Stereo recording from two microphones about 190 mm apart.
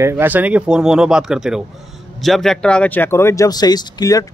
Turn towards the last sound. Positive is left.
turn(degrees=20)  # may be behind; listen again after turning